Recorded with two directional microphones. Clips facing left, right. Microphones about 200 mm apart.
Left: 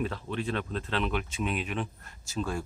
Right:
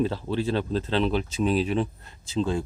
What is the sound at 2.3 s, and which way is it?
Speech, 20° right (ahead or behind).